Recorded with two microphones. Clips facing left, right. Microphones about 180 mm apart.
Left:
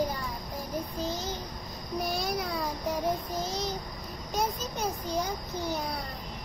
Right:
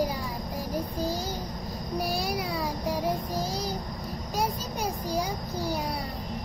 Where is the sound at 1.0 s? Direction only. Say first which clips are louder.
Right 3 dB; 35° right (ahead or behind).